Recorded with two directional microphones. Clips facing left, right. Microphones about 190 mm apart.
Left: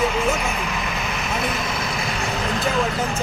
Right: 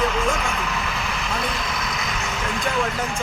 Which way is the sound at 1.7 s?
30° left (ahead or behind).